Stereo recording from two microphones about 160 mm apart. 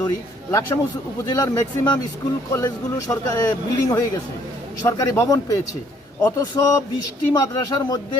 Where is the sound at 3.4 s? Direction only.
20° left (ahead or behind).